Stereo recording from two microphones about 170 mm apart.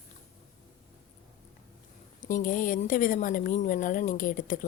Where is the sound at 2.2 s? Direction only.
50° left (ahead or behind).